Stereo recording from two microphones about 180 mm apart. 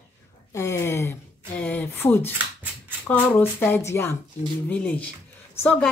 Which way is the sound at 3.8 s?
15° left (ahead or behind).